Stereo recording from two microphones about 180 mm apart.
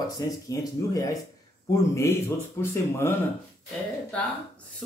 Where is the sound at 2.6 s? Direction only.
15° left (ahead or behind).